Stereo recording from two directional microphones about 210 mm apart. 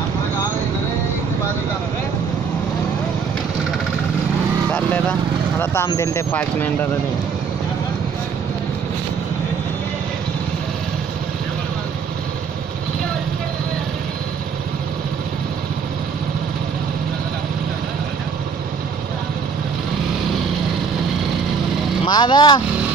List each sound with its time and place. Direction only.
4.6 s vehicle: 5° left (ahead or behind)
5.6 s speech: 10° left (ahead or behind)
22.0 s speech: 20° left (ahead or behind)